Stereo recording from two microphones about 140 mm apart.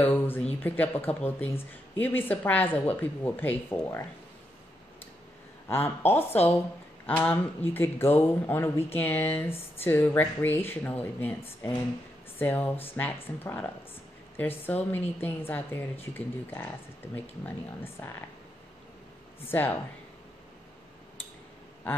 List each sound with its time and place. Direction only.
0.0 s a woman's voice: 15° left (ahead or behind)
5.7 s a woman's voice: 15° left (ahead or behind)
19.4 s a woman's voice: 15° left (ahead or behind)